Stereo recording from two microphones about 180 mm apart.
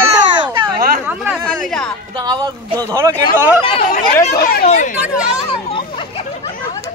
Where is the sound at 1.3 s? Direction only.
5° left (ahead or behind).